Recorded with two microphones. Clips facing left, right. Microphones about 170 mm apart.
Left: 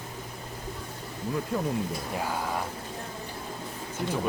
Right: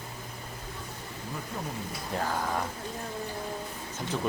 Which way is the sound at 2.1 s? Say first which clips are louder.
Right 4 dB; 10° left (ahead or behind).